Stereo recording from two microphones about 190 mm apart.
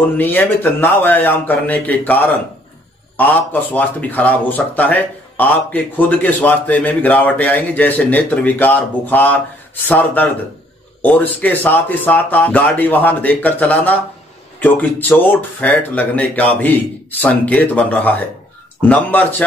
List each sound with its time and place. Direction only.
0.2 s speech: 10° left (ahead or behind)